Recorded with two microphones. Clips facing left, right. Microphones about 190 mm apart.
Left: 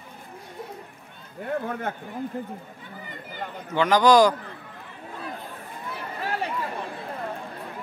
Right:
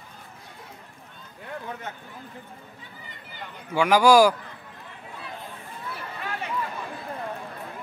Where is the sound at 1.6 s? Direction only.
55° left (ahead or behind).